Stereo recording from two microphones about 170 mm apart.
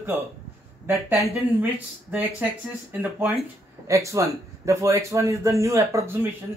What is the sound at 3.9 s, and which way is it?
A man's voice, 20° right (ahead or behind).